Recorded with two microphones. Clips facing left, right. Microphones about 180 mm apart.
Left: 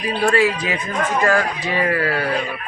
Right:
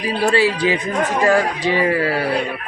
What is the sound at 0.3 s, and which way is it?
A man's voice, 30° right (ahead or behind).